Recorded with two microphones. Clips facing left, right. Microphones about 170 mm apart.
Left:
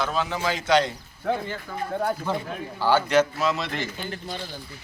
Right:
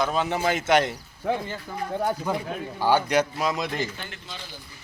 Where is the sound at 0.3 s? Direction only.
55° right (ahead or behind).